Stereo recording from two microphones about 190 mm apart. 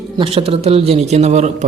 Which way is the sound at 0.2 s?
30° right (ahead or behind).